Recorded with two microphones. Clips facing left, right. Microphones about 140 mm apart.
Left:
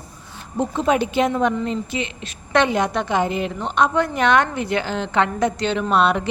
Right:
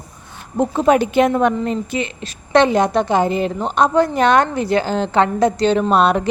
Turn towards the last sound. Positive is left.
turn(degrees=-40)  # may be behind; listen again after turning